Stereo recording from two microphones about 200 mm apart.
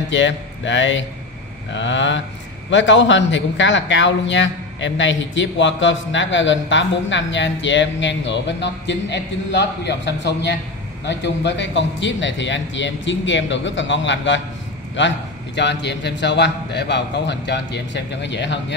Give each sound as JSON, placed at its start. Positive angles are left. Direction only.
{"t": 0.1, "sound": "a man's voice", "side_deg": 65}